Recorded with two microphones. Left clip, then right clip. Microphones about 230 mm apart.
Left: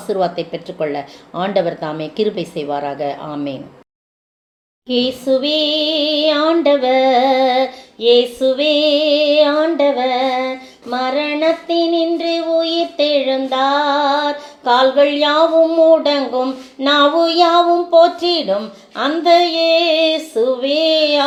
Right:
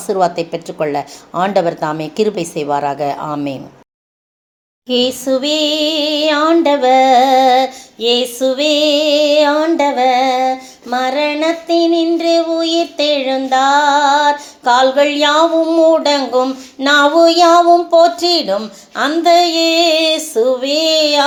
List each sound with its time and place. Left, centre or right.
0.1 s speech: right
4.9 s female singing: right